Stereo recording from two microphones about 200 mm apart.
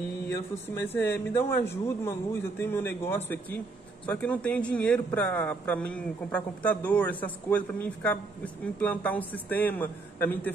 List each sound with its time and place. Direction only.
0.8 s a man's voice: 10° left (ahead or behind)